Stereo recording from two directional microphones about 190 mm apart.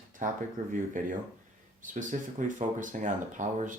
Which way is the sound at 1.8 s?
40° right (ahead or behind).